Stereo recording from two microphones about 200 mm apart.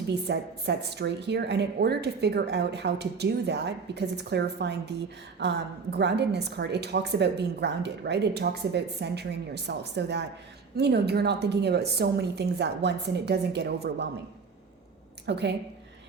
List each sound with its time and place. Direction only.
0.3 s a woman's voice: 55° right (ahead or behind)
15.3 s a woman's voice: 60° right (ahead or behind)